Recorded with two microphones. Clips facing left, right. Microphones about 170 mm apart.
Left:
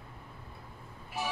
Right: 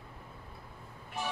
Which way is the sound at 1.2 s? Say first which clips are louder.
Left 1 dB; 10° left (ahead or behind).